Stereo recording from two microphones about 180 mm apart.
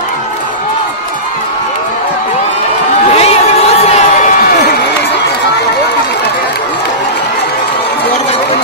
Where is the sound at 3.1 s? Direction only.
35° left (ahead or behind).